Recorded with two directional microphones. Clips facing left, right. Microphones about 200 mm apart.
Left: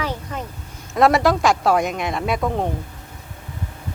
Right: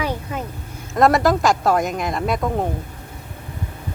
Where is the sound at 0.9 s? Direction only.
Centre (ahead or behind).